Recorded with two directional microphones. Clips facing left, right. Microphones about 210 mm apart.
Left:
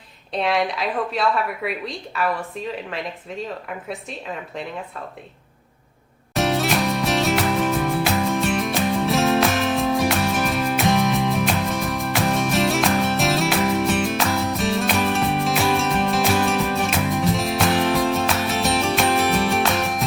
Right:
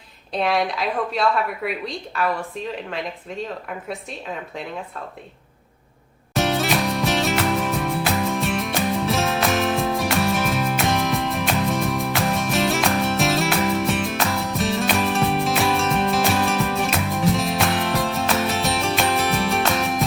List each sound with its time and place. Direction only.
0.3 s speech: centre (ahead or behind)
6.3 s music: centre (ahead or behind)